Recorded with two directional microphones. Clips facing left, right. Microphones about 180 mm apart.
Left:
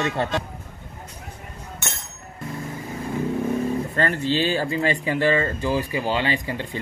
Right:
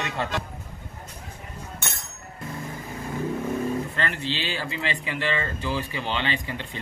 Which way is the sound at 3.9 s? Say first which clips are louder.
Left 7 dB; 45° left (ahead or behind).